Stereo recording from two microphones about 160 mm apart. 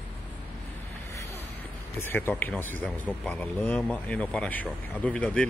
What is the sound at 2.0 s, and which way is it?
Speech, 15° left (ahead or behind).